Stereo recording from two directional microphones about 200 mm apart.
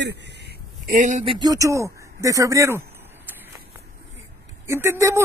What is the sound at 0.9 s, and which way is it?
Speech, 40° right (ahead or behind).